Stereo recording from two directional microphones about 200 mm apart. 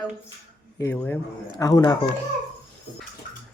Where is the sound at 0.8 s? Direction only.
15° left (ahead or behind).